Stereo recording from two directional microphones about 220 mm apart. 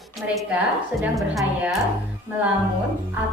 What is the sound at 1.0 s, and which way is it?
Speech, 5° right (ahead or behind).